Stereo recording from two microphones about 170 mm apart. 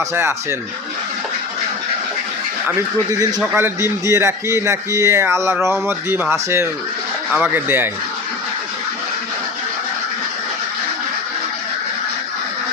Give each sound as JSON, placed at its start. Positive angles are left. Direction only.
{"t": 0.1, "sound": "speech", "side_deg": -15}
{"t": 3.4, "sound": "speech", "side_deg": -15}